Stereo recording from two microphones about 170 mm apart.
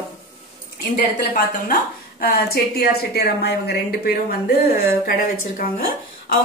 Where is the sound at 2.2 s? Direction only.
65° left (ahead or behind).